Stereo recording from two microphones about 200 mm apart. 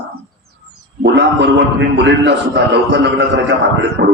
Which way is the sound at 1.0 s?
60° right (ahead or behind).